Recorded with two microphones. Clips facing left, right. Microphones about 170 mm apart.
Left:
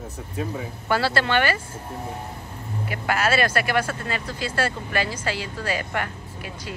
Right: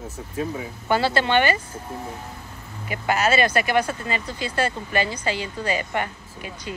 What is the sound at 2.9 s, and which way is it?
Speech, centre (ahead or behind).